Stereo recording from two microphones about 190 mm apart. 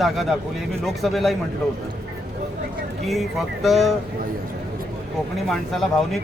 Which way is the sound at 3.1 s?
Centre (ahead or behind).